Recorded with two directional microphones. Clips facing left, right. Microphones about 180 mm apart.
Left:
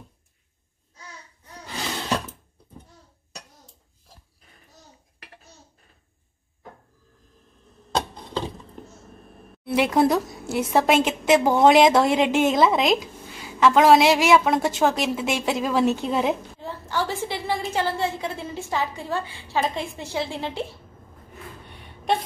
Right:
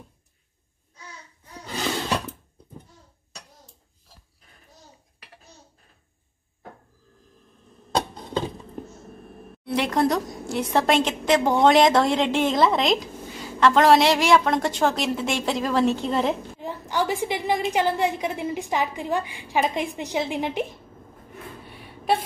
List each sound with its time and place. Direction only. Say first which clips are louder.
9.7 s a woman's voice: left 3 dB; 5° left (ahead or behind)
16.5 s a woman's voice: right 2 dB; 15° right (ahead or behind)
21.6 s a sound: right 1 dB; 5° right (ahead or behind)